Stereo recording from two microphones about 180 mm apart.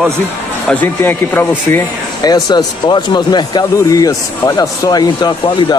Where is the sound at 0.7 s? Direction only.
10° left (ahead or behind).